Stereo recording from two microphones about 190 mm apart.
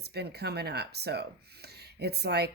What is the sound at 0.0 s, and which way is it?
Speech, 60° right (ahead or behind).